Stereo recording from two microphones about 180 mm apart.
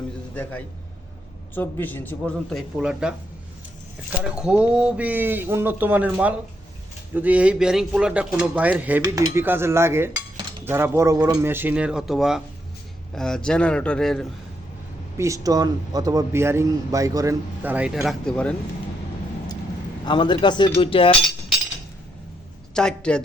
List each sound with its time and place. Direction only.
1.5 s a man's voice: 10° left (ahead or behind)
4.2 s a man's voice: 5° right (ahead or behind)
15.2 s a man's voice: 20° right (ahead or behind); by 18.5 s 5° left (ahead or behind)
20.1 s speech: 25° left (ahead or behind)
22.7 s a man's voice: 5° left (ahead or behind)